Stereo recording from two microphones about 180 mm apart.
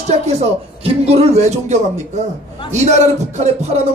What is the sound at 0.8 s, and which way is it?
Speech, 35° right (ahead or behind).